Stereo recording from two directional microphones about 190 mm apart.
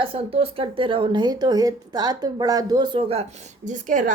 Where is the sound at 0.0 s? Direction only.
30° right (ahead or behind).